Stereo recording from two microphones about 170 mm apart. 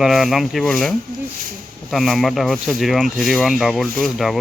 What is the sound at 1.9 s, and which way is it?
Speech, centre (ahead or behind).